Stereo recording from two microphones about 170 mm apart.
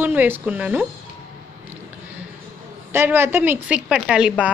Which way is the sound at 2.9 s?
15° right (ahead or behind).